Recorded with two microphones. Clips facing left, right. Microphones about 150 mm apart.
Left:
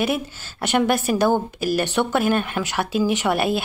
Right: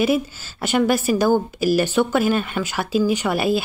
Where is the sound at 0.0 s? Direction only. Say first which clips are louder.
Right 4 dB; centre (ahead or behind).